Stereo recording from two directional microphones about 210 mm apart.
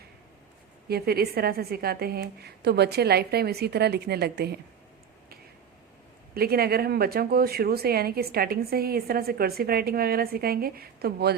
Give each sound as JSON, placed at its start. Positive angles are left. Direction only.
{"t": 0.9, "sound": "speech", "side_deg": -50}
{"t": 6.3, "sound": "speech", "side_deg": -45}